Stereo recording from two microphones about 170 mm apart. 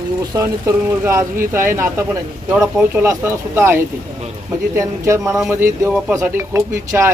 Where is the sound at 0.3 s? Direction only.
15° right (ahead or behind).